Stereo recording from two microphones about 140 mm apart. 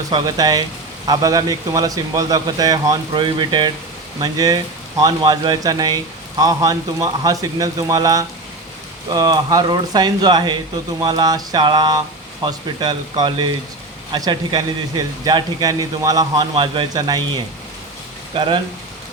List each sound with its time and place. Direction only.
0.1 s a man's voice: 30° right (ahead or behind)